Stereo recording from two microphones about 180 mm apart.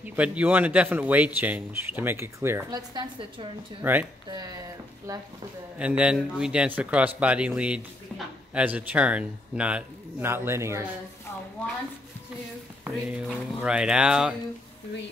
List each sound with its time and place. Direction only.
0.0 s speech: 10° right (ahead or behind); by 3.4 s 25° right (ahead or behind)
3.8 s speech: 10° right (ahead or behind)
5.8 s speech: 5° right (ahead or behind)
11.6 s a woman's voice: 5° left (ahead or behind)
12.8 s speech: 5° right (ahead or behind)